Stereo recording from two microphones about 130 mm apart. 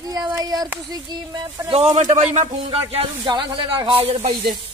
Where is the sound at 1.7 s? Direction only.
50° right (ahead or behind).